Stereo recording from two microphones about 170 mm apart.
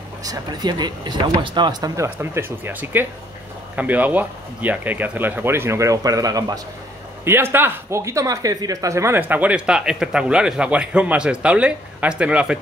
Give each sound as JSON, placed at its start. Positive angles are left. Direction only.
{"t": 0.2, "sound": "speech", "side_deg": -20}